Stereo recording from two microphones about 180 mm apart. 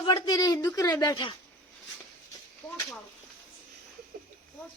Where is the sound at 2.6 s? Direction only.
5° left (ahead or behind).